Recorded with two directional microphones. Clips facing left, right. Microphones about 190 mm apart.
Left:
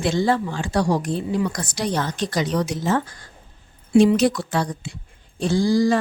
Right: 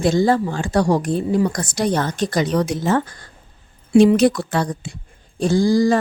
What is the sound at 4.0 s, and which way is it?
Speech, 55° right (ahead or behind).